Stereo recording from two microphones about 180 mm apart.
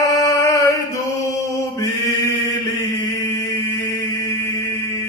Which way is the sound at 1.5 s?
20° left (ahead or behind).